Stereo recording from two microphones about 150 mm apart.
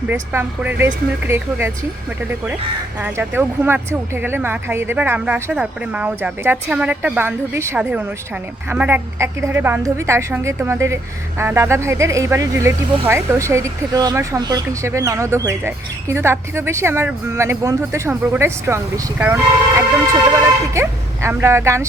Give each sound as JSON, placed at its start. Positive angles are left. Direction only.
{"t": 0.1, "sound": "a woman's voice", "side_deg": -10}
{"t": 3.0, "sound": "a woman's voice", "side_deg": -15}